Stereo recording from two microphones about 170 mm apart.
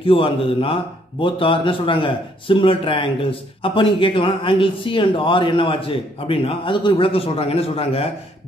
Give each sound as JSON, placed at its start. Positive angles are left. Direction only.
{"t": 0.0, "sound": "speech", "side_deg": 30}